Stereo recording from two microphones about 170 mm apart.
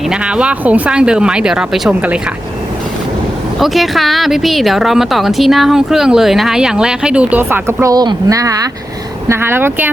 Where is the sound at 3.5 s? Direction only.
Centre (ahead or behind).